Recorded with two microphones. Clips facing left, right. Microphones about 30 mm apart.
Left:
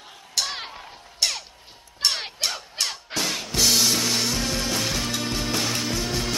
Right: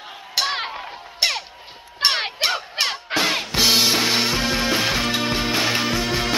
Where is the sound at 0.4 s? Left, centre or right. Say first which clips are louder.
Right 6 dB; right.